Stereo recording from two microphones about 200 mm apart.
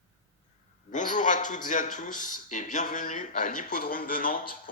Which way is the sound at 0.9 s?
40° left (ahead or behind).